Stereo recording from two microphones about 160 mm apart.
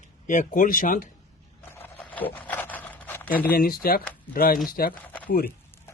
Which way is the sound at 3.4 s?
65° left (ahead or behind).